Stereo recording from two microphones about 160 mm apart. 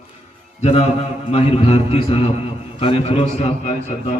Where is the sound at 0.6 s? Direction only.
40° left (ahead or behind).